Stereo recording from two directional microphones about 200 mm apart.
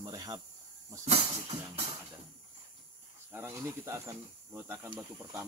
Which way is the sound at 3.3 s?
10° right (ahead or behind).